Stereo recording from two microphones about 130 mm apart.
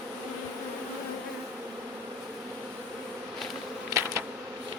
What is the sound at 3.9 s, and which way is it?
Bee, 25° right (ahead or behind).